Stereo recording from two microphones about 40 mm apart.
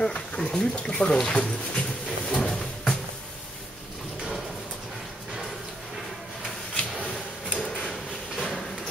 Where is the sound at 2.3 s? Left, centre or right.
Centre.